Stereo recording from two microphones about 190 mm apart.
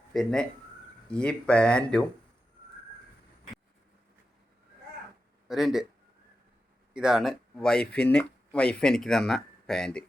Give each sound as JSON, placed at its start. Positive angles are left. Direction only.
{"t": 0.1, "sound": "speech", "side_deg": 5}
{"t": 5.5, "sound": "speech", "side_deg": 0}
{"t": 6.9, "sound": "speech", "side_deg": -5}